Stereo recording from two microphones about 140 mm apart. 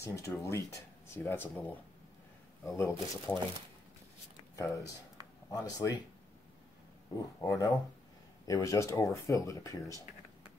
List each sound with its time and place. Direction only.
0.0 s speech: 20° left (ahead or behind)
4.6 s speech: 20° left (ahead or behind)
7.4 s speech: 25° left (ahead or behind)